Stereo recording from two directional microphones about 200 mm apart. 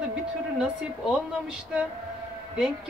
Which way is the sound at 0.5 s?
5° right (ahead or behind).